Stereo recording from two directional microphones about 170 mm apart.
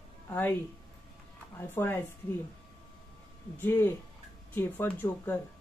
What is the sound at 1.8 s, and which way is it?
Speech, 15° left (ahead or behind).